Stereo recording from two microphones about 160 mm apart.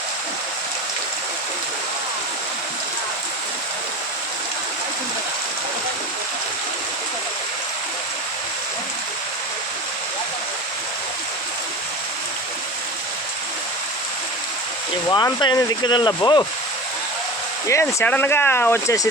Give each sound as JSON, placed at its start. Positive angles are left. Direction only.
{"t": 15.1, "sound": "speech", "side_deg": 30}
{"t": 17.7, "sound": "speech", "side_deg": 15}